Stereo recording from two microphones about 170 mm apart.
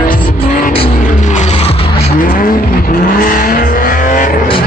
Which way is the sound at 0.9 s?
50° left (ahead or behind).